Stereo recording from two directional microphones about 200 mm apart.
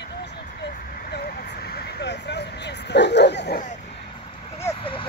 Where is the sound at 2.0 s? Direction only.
60° left (ahead or behind).